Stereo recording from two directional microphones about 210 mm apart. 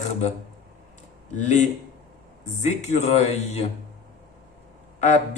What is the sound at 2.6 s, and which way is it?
Speech, 30° left (ahead or behind).